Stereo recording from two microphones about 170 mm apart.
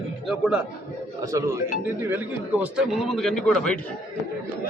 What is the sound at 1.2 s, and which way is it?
A man's voice, 20° right (ahead or behind).